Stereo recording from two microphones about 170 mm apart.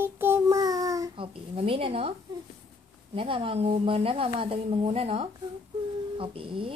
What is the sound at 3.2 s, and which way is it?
A woman's voice, 30° right (ahead or behind).